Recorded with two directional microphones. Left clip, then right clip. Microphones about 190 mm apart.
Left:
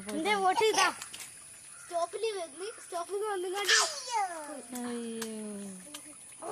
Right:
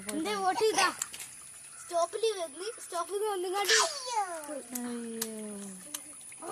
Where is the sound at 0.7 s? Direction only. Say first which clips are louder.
Even; 15° left (ahead or behind).